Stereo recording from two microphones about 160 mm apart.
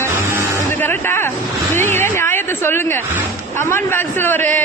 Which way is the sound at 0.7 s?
15° left (ahead or behind).